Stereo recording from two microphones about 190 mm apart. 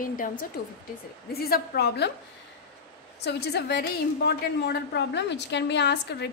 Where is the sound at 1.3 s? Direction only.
55° left (ahead or behind).